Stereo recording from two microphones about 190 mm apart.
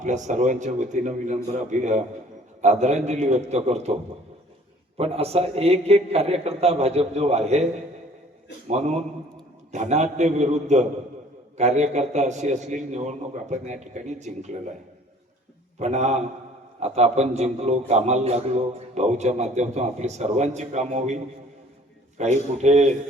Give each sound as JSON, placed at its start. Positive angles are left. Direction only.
{"t": 0.0, "sound": "a man's voice", "side_deg": -40}
{"t": 4.9, "sound": "a man's voice", "side_deg": -30}
{"t": 8.6, "sound": "a man's voice", "side_deg": -35}
{"t": 15.8, "sound": "a man's voice", "side_deg": -35}
{"t": 22.2, "sound": "a man's voice", "side_deg": -35}